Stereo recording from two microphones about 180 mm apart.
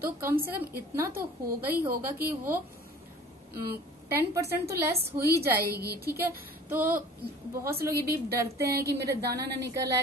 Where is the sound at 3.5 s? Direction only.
60° right (ahead or behind).